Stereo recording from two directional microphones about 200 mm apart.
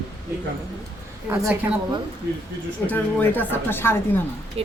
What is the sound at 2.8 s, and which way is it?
Speech, 10° left (ahead or behind).